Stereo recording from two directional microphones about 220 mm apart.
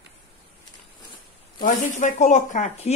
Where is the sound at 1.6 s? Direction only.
35° left (ahead or behind).